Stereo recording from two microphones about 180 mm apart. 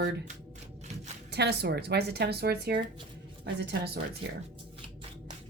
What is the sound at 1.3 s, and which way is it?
Speech, 70° right (ahead or behind).